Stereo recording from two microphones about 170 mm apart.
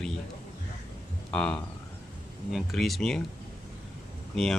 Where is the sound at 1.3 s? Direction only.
5° left (ahead or behind).